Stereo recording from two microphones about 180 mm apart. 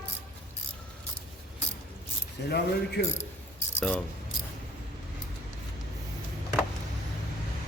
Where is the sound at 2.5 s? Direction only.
65° left (ahead or behind).